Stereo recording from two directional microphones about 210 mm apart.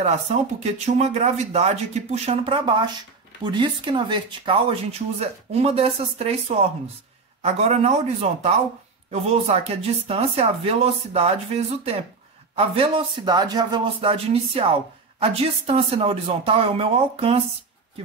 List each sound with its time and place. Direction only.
0.0 s speech: 30° right (ahead or behind)